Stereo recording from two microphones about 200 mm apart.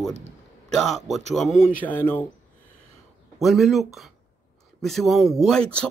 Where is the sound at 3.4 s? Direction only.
Centre (ahead or behind).